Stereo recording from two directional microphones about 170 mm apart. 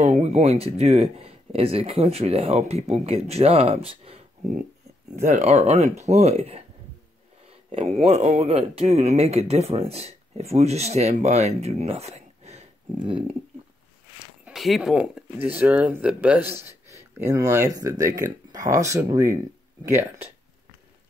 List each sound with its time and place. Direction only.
0.0 s speech: 40° right (ahead or behind)
14.4 s speech: centre (ahead or behind)